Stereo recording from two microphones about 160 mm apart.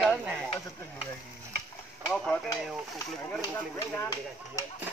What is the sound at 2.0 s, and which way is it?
Speech, 5° left (ahead or behind).